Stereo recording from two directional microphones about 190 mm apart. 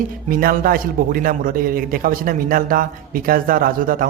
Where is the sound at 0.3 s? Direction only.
50° right (ahead or behind).